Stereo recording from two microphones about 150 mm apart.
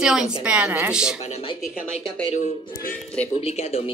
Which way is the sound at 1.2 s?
45° left (ahead or behind).